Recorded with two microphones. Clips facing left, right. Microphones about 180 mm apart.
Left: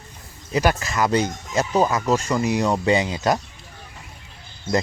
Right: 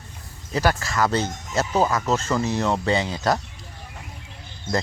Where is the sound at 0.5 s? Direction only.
15° left (ahead or behind).